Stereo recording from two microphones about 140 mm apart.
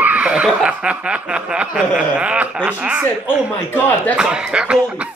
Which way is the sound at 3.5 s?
10° left (ahead or behind).